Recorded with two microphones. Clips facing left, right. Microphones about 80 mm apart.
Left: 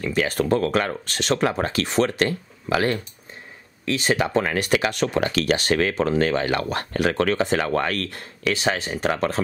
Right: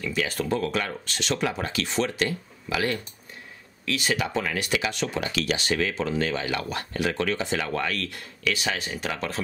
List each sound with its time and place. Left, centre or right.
0.0 s speech: left